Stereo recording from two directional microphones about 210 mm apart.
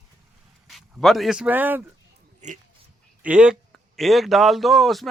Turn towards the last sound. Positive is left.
turn(degrees=0)  # may be behind; listen again after turning